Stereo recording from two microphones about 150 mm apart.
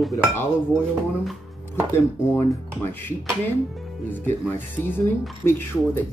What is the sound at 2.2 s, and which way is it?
Speech, 15° left (ahead or behind).